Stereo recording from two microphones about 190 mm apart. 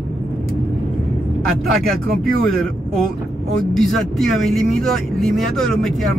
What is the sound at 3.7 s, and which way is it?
Speech, centre (ahead or behind).